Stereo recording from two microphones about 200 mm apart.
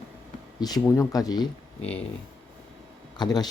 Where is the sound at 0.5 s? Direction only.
20° left (ahead or behind).